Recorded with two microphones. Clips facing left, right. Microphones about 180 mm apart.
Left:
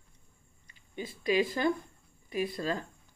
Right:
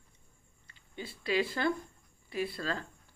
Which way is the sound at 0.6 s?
15° left (ahead or behind).